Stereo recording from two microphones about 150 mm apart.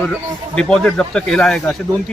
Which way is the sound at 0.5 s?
5° left (ahead or behind).